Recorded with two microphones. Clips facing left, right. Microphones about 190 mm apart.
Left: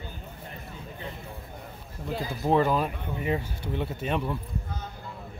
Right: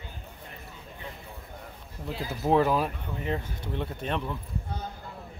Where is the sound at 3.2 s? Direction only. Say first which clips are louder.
Left 3 dB; 10° left (ahead or behind).